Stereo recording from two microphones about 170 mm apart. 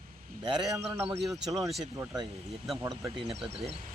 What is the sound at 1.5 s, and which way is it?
Speech, 20° right (ahead or behind).